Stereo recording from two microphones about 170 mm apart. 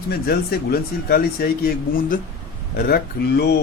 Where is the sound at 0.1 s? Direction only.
65° left (ahead or behind).